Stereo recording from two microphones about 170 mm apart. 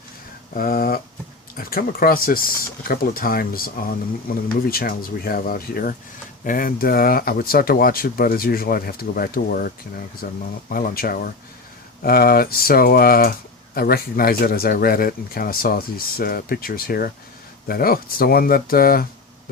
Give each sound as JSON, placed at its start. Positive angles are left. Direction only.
{"t": 0.5, "sound": "speech", "side_deg": 60}